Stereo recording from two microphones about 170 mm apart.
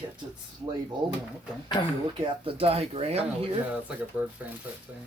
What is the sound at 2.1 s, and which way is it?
Speech, 30° right (ahead or behind).